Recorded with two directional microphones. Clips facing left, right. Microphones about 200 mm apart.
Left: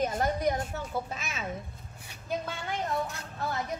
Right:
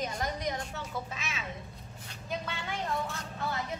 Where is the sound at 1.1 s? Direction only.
40° left (ahead or behind).